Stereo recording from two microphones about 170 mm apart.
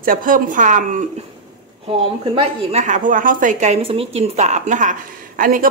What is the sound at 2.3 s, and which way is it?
A man's voice, 45° right (ahead or behind).